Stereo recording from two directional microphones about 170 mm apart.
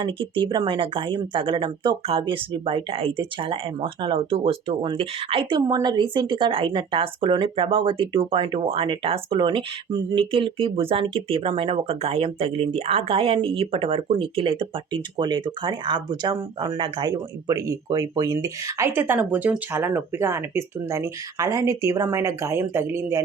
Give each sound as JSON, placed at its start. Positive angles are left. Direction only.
{"t": 0.0, "sound": "speech", "side_deg": -25}